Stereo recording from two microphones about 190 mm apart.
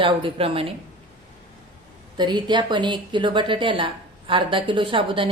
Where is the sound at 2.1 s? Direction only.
25° right (ahead or behind).